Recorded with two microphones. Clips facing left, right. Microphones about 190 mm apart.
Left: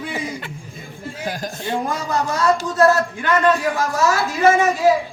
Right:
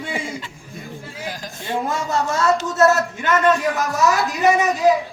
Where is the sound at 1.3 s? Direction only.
50° left (ahead or behind).